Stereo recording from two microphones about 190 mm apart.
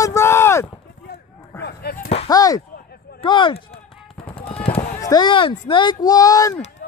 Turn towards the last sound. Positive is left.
turn(degrees=20)  # may be behind; listen again after turning